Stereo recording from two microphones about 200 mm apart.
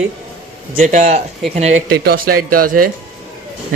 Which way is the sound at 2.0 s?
45° right (ahead or behind).